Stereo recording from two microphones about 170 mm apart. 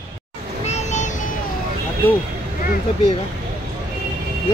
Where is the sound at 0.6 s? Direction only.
40° left (ahead or behind).